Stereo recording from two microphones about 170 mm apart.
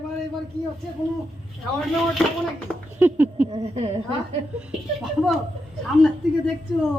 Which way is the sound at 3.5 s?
40° right (ahead or behind).